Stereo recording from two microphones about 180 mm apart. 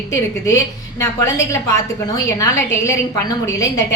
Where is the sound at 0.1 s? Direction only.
15° left (ahead or behind).